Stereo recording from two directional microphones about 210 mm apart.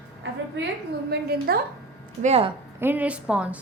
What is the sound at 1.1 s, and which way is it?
Speech, 50° right (ahead or behind).